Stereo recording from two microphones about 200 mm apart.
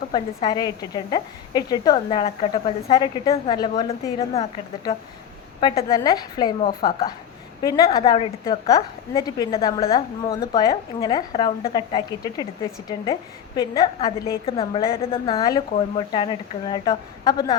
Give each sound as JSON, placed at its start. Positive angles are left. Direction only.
{"t": 0.1, "sound": "a woman's voice", "side_deg": 20}
{"t": 2.1, "sound": "a woman's voice", "side_deg": 30}
{"t": 5.5, "sound": "a woman's voice", "side_deg": 25}
{"t": 13.6, "sound": "a woman's voice", "side_deg": 20}
{"t": 14.4, "sound": "a woman's voice", "side_deg": 30}